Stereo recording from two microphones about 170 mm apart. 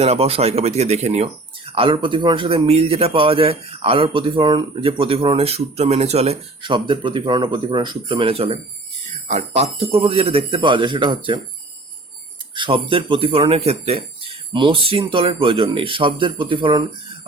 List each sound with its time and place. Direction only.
0.0 s a man's voice: 35° right (ahead or behind)
12.5 s a man's voice: 30° right (ahead or behind)